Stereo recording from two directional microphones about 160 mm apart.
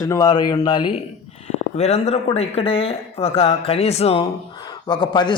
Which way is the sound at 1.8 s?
40° left (ahead or behind).